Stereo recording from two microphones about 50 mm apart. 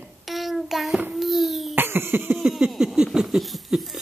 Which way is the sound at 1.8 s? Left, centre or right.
Right.